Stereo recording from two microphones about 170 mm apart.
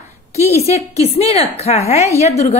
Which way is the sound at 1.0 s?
35° left (ahead or behind).